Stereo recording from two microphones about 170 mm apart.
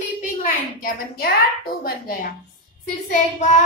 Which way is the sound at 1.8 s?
65° left (ahead or behind).